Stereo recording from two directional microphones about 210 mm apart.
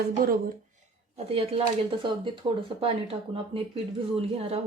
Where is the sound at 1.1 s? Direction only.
25° right (ahead or behind).